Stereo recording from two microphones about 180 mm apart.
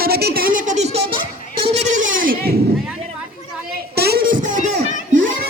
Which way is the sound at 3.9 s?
60° right (ahead or behind).